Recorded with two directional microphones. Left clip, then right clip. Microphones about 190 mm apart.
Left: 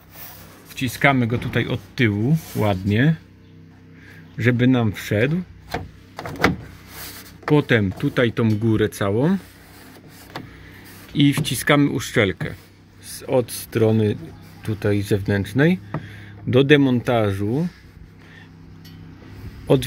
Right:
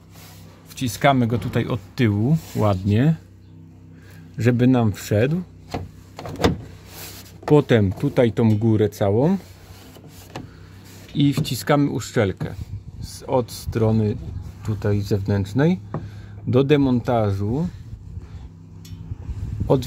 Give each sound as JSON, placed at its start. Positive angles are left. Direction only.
{"t": 0.7, "sound": "speech", "side_deg": -10}
{"t": 4.4, "sound": "speech", "side_deg": -10}
{"t": 7.4, "sound": "speech", "side_deg": -20}
{"t": 11.1, "sound": "speech", "side_deg": -5}